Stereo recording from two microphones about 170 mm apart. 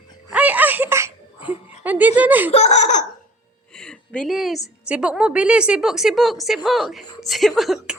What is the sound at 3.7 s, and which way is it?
A woman's voice, 5° left (ahead or behind).